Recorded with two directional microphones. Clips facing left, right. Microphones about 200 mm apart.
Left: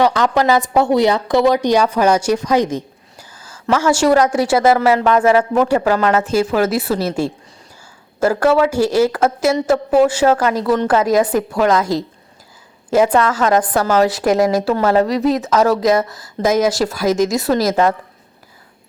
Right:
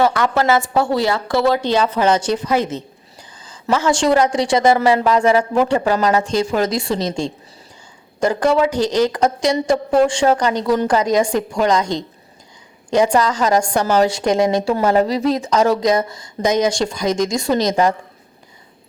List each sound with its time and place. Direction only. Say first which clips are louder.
0.0 s a woman's voice: left 2 dB; 15° left (ahead or behind)
2.5 s a sound: left 3 dB; 15° left (ahead or behind)
4.3 s a woman's voice: left 1 dB; 5° left (ahead or behind)
4.7 s speech: left 1 dB; 10° right (ahead or behind)
5.6 s a woman's voice: left 2 dB; 10° left (ahead or behind)
5.9 s speech: left 1 dB; 15° right (ahead or behind)
6.2 s speech: left 2 dB; 5° left (ahead or behind)
8.4 s speech: left 2 dB; 20° right (ahead or behind)
8.7 s a woman's voice: left 2 dB; 10° left (ahead or behind)